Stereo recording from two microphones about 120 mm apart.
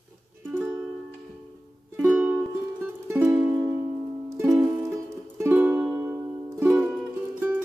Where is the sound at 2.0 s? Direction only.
15° right (ahead or behind).